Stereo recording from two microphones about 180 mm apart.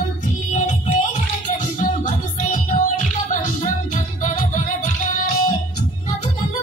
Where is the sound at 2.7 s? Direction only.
40° left (ahead or behind).